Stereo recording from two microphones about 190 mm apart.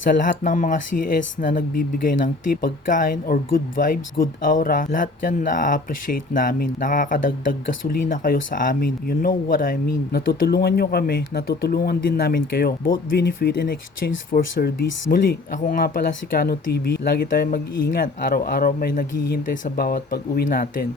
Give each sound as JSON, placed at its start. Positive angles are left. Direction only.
{"t": 0.0, "sound": "speech", "side_deg": 45}
{"t": 14.3, "sound": "speech", "side_deg": 40}
{"t": 15.0, "sound": "speech", "side_deg": 60}
{"t": 15.6, "sound": "speech", "side_deg": 45}